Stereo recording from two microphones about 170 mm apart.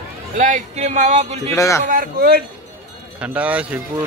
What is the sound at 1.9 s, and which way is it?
Speech, 60° right (ahead or behind).